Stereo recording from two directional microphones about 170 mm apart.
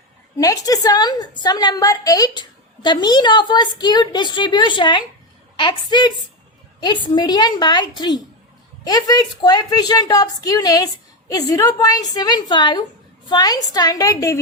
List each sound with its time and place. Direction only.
0.3 s a woman's voice: 20° left (ahead or behind)